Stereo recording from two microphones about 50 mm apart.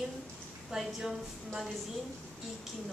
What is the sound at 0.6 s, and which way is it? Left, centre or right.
A woman's voice, centre.